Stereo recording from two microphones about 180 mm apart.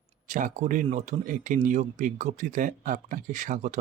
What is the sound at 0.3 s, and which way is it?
Speech, 45° right (ahead or behind).